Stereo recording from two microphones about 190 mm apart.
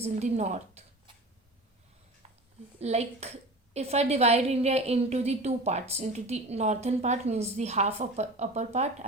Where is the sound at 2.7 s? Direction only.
35° right (ahead or behind).